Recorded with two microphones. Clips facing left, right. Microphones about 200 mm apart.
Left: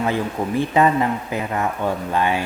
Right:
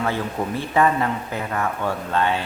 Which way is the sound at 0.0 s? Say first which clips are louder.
Left 2 dB; 15° left (ahead or behind).